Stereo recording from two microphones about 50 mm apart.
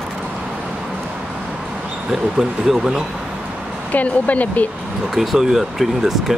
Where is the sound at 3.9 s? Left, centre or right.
Left.